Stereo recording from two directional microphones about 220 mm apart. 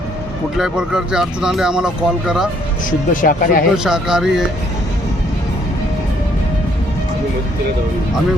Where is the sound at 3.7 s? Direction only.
5° right (ahead or behind).